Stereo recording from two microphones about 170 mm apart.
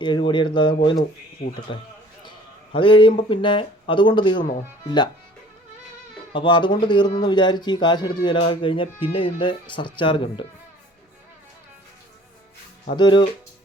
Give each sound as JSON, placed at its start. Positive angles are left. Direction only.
{"t": 0.0, "sound": "a man's voice", "side_deg": 30}
{"t": 2.7, "sound": "a man's voice", "side_deg": 30}
{"t": 6.3, "sound": "a man's voice", "side_deg": 30}
{"t": 12.9, "sound": "a man's voice", "side_deg": 25}